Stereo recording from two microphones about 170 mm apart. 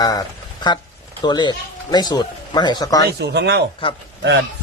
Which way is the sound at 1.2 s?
25° left (ahead or behind).